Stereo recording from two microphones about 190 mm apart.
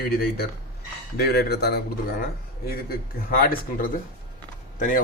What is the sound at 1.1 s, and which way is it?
Speech, 55° left (ahead or behind).